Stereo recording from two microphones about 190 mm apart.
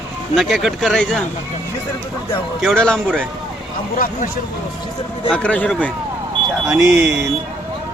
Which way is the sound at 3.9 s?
45° left (ahead or behind).